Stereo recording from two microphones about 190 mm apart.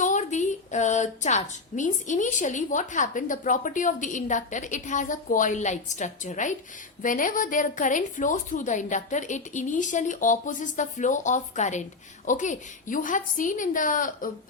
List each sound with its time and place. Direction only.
0.0 s a woman's voice: 40° left (ahead or behind)